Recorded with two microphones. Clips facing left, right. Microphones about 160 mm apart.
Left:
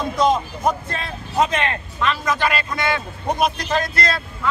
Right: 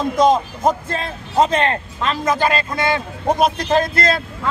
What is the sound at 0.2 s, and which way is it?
A man's voice, 25° right (ahead or behind).